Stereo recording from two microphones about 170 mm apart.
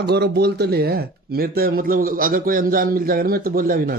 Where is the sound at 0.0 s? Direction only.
75° right (ahead or behind).